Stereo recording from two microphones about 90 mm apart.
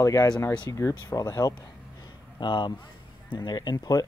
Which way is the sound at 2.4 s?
60° left (ahead or behind).